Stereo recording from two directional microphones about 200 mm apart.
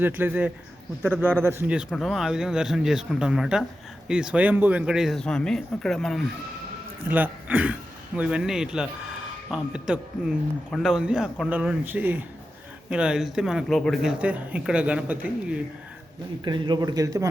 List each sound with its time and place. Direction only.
0.0 s speech: 10° right (ahead or behind)
16.4 s speech: 20° right (ahead or behind)